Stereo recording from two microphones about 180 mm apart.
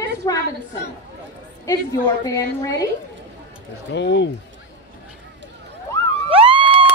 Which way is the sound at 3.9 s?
75° left (ahead or behind).